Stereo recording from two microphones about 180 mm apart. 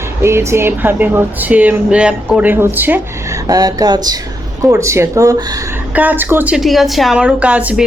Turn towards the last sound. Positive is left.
turn(degrees=-5)  # may be behind; listen again after turning